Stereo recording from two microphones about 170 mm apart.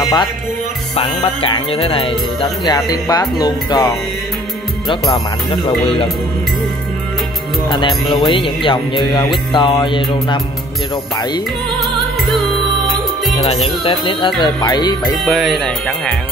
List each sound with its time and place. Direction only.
0.9 s music: 35° left (ahead or behind)
7.6 s music: 30° left (ahead or behind)
13.8 s music: 30° left (ahead or behind)
15.2 s speech: centre (ahead or behind)